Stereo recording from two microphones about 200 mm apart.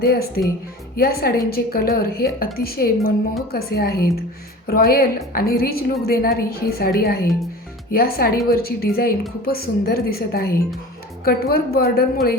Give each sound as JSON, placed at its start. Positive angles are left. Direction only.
{"t": 0.0, "sound": "a woman's voice", "side_deg": 50}